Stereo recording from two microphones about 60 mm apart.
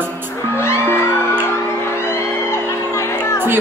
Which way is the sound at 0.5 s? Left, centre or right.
Left.